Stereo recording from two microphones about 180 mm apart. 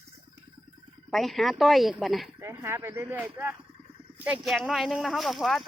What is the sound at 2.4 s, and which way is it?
Speech, 15° right (ahead or behind).